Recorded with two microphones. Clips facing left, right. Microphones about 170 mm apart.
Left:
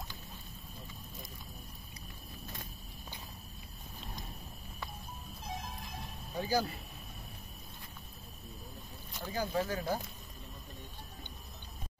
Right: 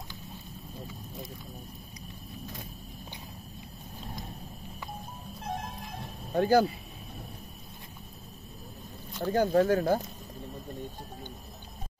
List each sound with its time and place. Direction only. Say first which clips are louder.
5.4 s music: right 7 dB; 60° right (ahead or behind)
6.3 s speech: right 10 dB; 60° right (ahead or behind)
9.2 s speech: right 10 dB; 55° right (ahead or behind)